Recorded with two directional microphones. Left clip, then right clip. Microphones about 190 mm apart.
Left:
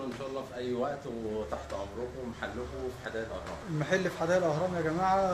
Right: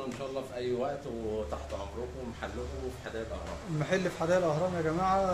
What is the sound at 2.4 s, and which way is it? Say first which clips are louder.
Speech: left 2 dB; centre (ahead or behind).